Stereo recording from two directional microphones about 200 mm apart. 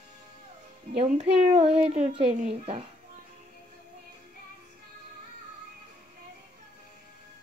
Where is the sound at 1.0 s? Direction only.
35° right (ahead or behind).